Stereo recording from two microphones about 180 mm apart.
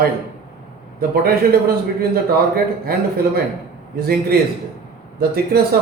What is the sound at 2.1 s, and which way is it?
Speech, 55° right (ahead or behind).